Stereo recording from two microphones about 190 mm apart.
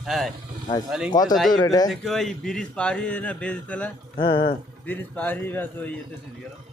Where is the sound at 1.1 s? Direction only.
20° left (ahead or behind).